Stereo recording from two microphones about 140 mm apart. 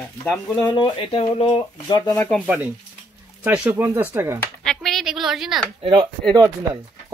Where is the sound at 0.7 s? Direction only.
40° left (ahead or behind).